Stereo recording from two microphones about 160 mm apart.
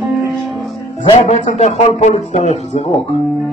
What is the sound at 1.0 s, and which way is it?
A man's voice, 45° left (ahead or behind).